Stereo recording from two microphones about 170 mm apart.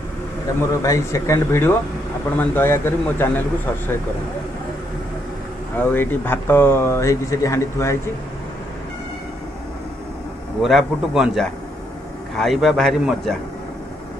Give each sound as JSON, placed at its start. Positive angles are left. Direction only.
{"t": 0.6, "sound": "speech", "side_deg": 20}
{"t": 5.8, "sound": "speech", "side_deg": 10}
{"t": 10.6, "sound": "a man's voice", "side_deg": 0}